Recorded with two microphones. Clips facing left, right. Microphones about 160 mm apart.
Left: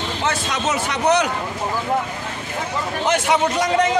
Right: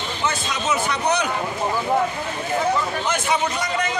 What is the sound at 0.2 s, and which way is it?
A man's voice, 90° left.